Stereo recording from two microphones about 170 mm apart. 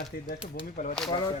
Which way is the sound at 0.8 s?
55° left (ahead or behind).